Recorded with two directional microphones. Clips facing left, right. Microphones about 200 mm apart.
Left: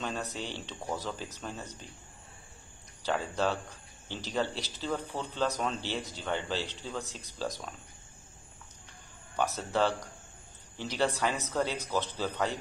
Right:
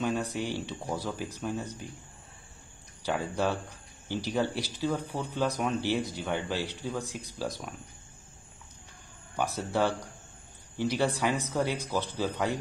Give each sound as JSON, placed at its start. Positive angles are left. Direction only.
{"t": 0.0, "sound": "speech", "side_deg": -10}
{"t": 3.0, "sound": "speech", "side_deg": -10}
{"t": 9.4, "sound": "speech", "side_deg": -10}